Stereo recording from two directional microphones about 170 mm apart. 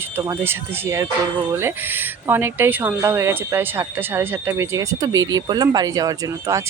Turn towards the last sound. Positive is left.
turn(degrees=-20)  # may be behind; listen again after turning